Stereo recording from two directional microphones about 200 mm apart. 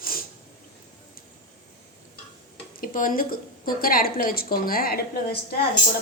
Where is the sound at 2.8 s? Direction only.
45° left (ahead or behind).